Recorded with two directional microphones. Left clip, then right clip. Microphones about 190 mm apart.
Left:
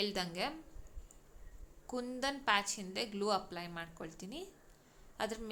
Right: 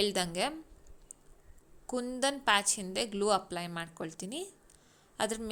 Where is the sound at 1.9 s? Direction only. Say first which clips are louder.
Right 6 dB; 30° right (ahead or behind).